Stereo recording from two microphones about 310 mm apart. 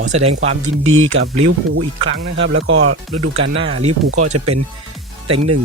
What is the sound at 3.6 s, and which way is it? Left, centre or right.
Speech, centre.